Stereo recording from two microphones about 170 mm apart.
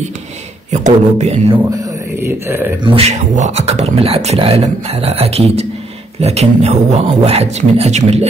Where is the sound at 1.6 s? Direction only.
15° right (ahead or behind).